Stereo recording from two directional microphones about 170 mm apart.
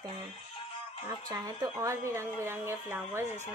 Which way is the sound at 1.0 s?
25° right (ahead or behind).